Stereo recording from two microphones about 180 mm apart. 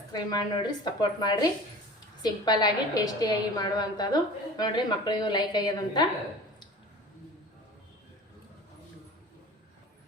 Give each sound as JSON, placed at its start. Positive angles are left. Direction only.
{"t": 0.1, "sound": "a woman's voice", "side_deg": 20}